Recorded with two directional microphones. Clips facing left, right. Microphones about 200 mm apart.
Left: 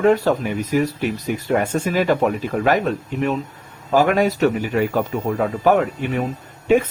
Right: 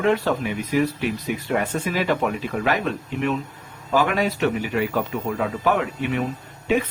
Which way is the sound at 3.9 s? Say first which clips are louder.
Left 5 dB; 45° left (ahead or behind).